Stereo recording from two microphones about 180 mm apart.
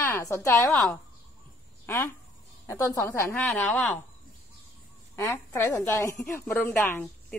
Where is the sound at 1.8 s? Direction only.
15° left (ahead or behind).